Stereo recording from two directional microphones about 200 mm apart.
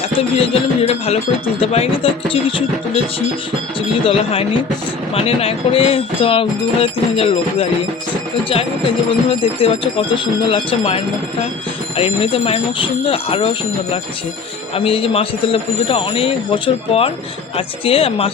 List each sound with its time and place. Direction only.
0.1 s speech: 30° left (ahead or behind)
4.0 s speech: 30° left (ahead or behind)
9.0 s speech: 25° left (ahead or behind)